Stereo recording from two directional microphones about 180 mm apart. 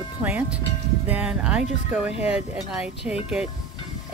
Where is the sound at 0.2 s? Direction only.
10° right (ahead or behind).